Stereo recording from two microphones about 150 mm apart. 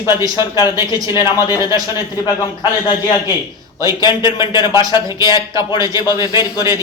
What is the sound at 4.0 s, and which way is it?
Speech, 30° left (ahead or behind).